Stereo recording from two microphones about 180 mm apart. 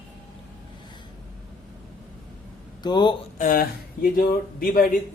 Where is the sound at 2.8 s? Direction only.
25° left (ahead or behind).